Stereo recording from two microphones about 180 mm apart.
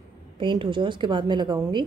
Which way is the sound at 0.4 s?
25° right (ahead or behind).